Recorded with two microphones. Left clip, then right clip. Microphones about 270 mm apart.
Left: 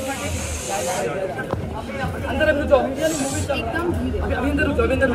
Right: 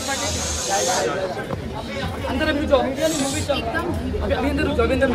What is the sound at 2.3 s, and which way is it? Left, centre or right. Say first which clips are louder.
Chatter: left 2 dB; right.